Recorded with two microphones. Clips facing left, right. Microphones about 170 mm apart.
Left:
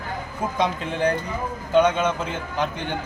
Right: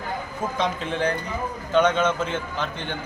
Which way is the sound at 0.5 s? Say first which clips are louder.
Left 2 dB; 10° left (ahead or behind).